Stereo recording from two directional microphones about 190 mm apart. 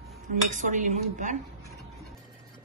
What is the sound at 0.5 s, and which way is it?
Speech, 40° right (ahead or behind).